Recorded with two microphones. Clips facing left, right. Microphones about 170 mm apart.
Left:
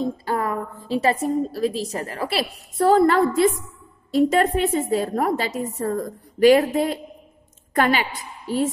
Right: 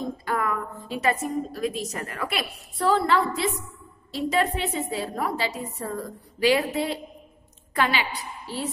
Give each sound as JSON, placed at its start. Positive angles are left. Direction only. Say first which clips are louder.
{"t": 0.0, "sound": "a woman's voice", "louder": "left 4 dB", "side_deg": 30}
{"t": 2.8, "sound": "a woman's voice", "louder": "left 6 dB", "side_deg": 45}